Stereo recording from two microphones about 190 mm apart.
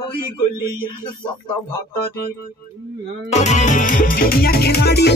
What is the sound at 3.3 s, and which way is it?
Music, 40° left (ahead or behind).